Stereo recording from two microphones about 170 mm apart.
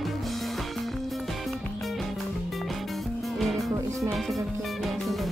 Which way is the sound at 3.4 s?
Centre (ahead or behind).